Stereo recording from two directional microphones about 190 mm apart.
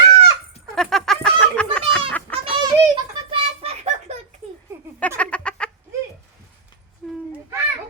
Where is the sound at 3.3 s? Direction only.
35° right (ahead or behind).